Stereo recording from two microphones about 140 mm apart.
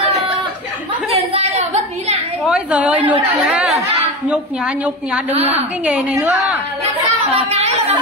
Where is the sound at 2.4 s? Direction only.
5° right (ahead or behind).